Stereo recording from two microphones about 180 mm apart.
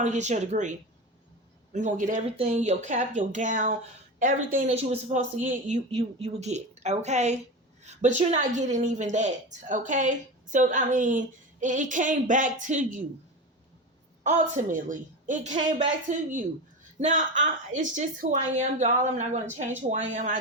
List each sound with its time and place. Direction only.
0.0 s a woman's voice: 40° right (ahead or behind)
4.7 s a woman's voice: 35° right (ahead or behind)
14.3 s a woman's voice: 45° right (ahead or behind)